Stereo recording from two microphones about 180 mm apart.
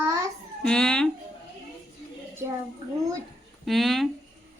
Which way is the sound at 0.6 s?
5° left (ahead or behind).